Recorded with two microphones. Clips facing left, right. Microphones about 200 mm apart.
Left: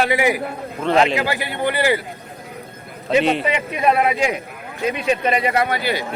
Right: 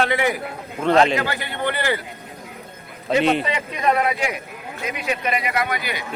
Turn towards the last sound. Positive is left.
turn(degrees=30)  # may be behind; listen again after turning